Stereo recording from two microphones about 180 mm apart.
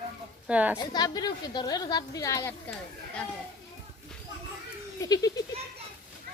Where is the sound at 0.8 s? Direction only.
20° left (ahead or behind).